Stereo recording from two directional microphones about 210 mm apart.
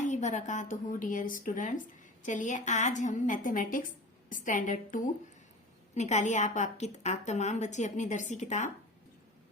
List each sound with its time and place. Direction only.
0.0 s a woman's voice: 35° left (ahead or behind)